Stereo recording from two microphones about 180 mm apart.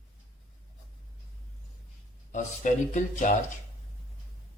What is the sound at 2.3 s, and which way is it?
Speech, 45° left (ahead or behind).